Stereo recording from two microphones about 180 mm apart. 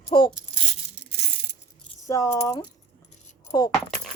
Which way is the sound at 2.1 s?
15° left (ahead or behind).